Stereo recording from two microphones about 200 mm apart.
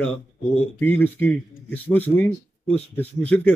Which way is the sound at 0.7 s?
10° left (ahead or behind).